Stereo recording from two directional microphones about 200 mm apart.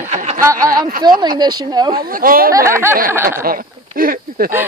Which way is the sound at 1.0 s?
20° right (ahead or behind).